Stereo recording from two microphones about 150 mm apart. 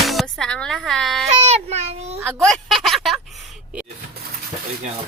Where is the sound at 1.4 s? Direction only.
45° right (ahead or behind).